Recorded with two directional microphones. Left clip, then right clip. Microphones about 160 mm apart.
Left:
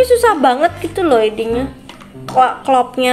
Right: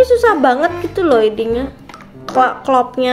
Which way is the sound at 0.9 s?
20° right (ahead or behind).